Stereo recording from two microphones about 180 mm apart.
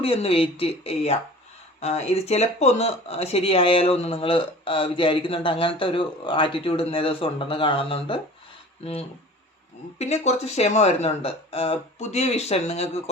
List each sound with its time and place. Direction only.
0.0 s speech: 35° left (ahead or behind)